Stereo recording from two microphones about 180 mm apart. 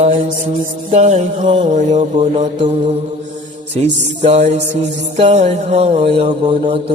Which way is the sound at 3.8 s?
40° right (ahead or behind).